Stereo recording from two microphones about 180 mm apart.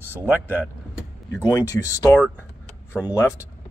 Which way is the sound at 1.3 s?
15° left (ahead or behind).